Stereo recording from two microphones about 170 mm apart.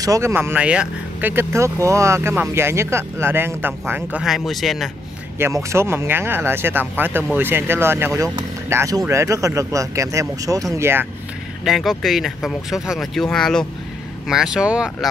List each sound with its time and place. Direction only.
0.0 s speech: 20° right (ahead or behind); by 4.9 s centre (ahead or behind)
5.4 s speech: 15° right (ahead or behind)
11.6 s speech: centre (ahead or behind)